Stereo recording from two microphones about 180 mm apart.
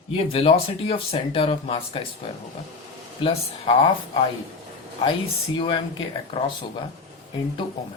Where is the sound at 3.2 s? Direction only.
35° left (ahead or behind).